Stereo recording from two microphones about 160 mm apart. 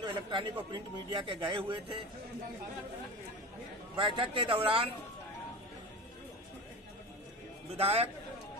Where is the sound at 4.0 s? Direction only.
30° right (ahead or behind).